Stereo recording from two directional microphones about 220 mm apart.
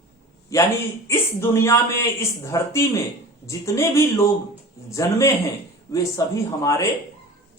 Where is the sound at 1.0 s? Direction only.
10° left (ahead or behind).